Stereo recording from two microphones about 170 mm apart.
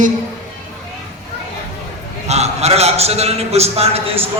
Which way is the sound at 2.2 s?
40° right (ahead or behind).